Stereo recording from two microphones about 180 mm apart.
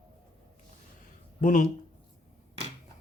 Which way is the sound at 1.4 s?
45° left (ahead or behind).